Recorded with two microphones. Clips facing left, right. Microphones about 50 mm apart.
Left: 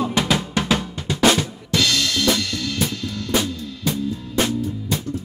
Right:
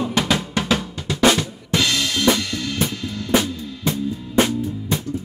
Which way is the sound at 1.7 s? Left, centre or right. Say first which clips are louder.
Even; centre.